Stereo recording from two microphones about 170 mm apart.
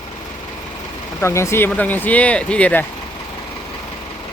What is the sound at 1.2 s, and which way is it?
Speech, 15° left (ahead or behind).